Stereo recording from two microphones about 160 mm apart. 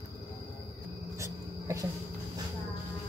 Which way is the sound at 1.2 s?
20° right (ahead or behind).